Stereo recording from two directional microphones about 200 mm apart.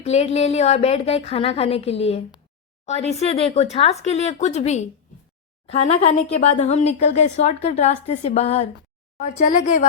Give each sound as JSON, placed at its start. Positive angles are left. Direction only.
{"t": 0.0, "sound": "speech", "side_deg": 30}